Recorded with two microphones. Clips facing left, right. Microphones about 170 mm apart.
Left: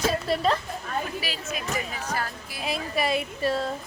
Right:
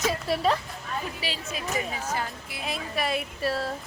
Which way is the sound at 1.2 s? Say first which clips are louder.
Left 1 dB; 30° right (ahead or behind).